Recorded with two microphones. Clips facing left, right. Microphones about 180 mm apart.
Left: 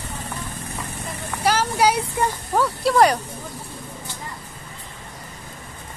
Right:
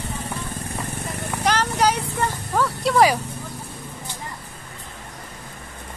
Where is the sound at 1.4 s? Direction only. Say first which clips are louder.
Left 1 dB; 10° left (ahead or behind).